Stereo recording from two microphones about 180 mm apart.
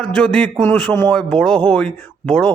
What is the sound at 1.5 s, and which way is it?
Speech, 25° right (ahead or behind).